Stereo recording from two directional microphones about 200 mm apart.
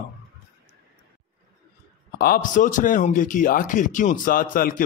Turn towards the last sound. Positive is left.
turn(degrees=45)  # may be behind; listen again after turning